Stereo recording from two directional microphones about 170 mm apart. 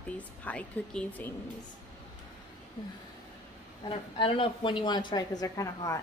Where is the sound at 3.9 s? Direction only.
30° left (ahead or behind).